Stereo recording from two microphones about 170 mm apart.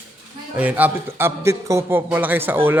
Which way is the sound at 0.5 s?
10° right (ahead or behind).